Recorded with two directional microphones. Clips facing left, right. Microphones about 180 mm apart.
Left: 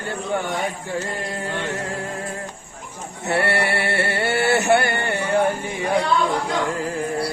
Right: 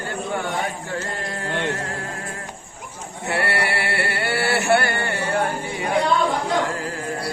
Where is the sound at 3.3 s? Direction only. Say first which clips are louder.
Left 3 dB; 25° left (ahead or behind).